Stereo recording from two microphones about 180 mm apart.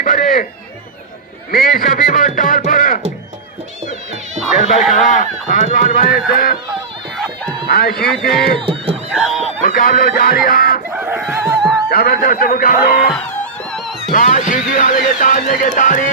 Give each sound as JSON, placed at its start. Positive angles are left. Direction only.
{"t": 0.0, "sound": "speech", "side_deg": 50}
{"t": 1.5, "sound": "speech", "side_deg": 50}
{"t": 4.5, "sound": "speech", "side_deg": 40}
{"t": 7.7, "sound": "speech", "side_deg": 55}
{"t": 8.6, "sound": "speech", "side_deg": -30}
{"t": 9.1, "sound": "speech", "side_deg": 0}
{"t": 9.6, "sound": "speech", "side_deg": 50}
{"t": 10.9, "sound": "fowl", "side_deg": -10}
{"t": 11.9, "sound": "speech", "side_deg": 55}
{"t": 13.1, "sound": "music", "side_deg": 5}
{"t": 14.1, "sound": "speech", "side_deg": 45}